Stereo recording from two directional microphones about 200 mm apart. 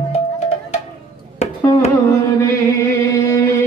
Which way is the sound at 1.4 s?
35° left (ahead or behind).